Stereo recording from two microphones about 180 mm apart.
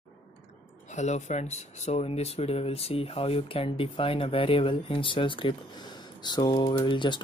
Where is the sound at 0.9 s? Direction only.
40° left (ahead or behind).